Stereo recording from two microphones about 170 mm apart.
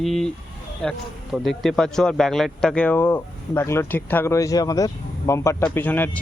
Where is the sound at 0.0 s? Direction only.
Centre (ahead or behind).